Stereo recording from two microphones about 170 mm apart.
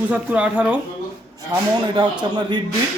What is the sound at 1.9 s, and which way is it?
Speech, 25° right (ahead or behind).